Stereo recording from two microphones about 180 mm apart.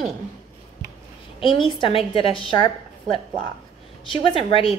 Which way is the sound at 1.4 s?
25° left (ahead or behind).